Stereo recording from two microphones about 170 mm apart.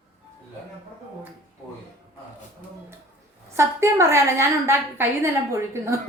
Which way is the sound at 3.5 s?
15° right (ahead or behind).